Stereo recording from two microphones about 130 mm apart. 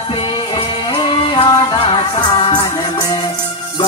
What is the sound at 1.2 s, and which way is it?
Music, 40° left (ahead or behind).